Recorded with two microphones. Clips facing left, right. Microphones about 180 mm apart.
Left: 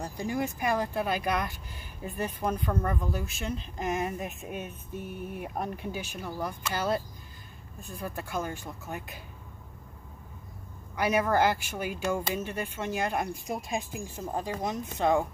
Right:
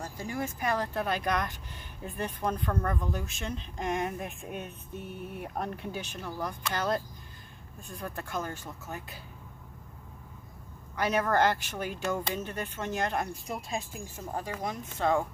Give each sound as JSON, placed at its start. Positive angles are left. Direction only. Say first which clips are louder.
{"t": 0.0, "sound": "a sound", "louder": "left 4 dB", "side_deg": 15}
{"t": 0.6, "sound": "speech", "louder": "left 2 dB", "side_deg": 10}
{"t": 8.0, "sound": "speech", "louder": "left 2 dB", "side_deg": 10}
{"t": 11.0, "sound": "speech", "louder": "left 1 dB", "side_deg": 10}